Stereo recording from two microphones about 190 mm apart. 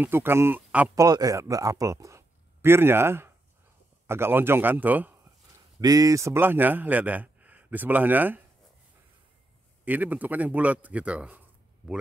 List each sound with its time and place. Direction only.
0.0 s a man's voice: 10° right (ahead or behind)
0.9 s a man's voice: 20° right (ahead or behind)
9.8 s a man's voice: 10° right (ahead or behind)